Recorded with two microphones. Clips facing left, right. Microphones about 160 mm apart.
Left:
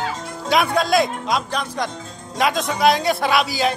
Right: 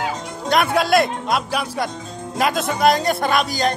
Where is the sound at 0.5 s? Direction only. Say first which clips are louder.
Right 1 dB; centre (ahead or behind).